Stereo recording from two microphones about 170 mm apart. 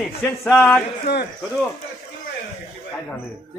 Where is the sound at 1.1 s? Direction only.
80° left.